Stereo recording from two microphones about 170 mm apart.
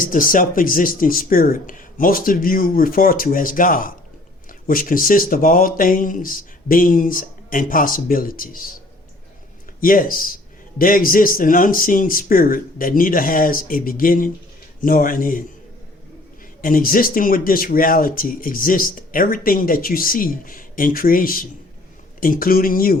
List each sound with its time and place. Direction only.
0.0 s speech: 55° left (ahead or behind)
9.8 s speech: 55° left (ahead or behind)
16.6 s speech: 55° left (ahead or behind)